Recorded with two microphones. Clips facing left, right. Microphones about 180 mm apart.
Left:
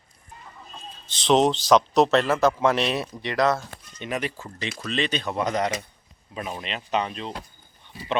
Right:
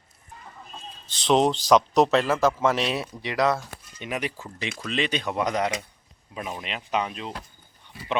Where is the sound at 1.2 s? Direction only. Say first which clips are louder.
Left 1 dB; 5° right (ahead or behind).